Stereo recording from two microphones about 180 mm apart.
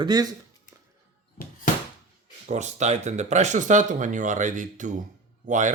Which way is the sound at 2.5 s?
40° right (ahead or behind).